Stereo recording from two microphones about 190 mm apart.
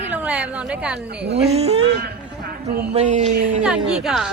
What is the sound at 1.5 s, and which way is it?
Speech, 35° right (ahead or behind).